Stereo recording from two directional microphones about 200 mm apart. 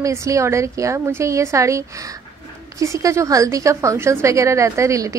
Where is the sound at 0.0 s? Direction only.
15° right (ahead or behind).